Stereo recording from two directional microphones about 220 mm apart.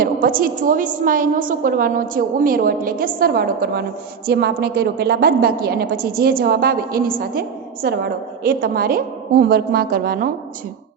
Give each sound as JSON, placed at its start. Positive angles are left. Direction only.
{"t": 0.0, "sound": "a woman's voice", "side_deg": -40}